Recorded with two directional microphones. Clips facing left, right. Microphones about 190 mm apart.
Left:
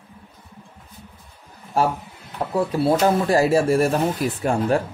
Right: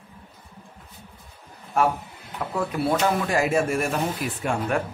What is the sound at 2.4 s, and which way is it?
Speech, 30° left (ahead or behind).